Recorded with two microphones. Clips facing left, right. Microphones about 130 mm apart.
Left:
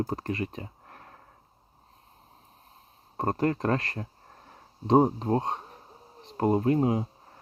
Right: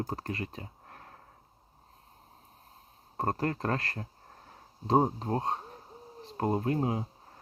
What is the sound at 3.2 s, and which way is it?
Speech, 25° left (ahead or behind).